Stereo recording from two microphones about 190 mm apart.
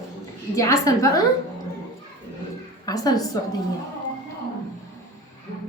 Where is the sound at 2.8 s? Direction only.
20° left (ahead or behind).